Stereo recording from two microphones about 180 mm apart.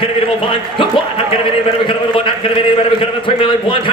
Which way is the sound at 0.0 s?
30° left (ahead or behind).